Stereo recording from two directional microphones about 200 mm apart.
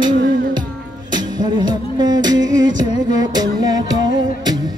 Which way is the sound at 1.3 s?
20° right (ahead or behind).